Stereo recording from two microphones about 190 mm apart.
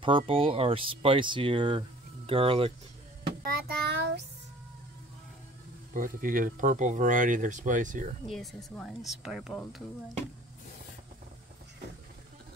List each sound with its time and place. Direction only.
0.0 s speech: 30° right (ahead or behind)
3.6 s child singing: 60° right (ahead or behind)
5.9 s speech: 45° right (ahead or behind)
8.3 s speech: centre (ahead or behind)